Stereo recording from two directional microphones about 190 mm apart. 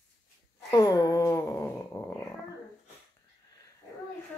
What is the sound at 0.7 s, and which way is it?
Dog, 20° left (ahead or behind).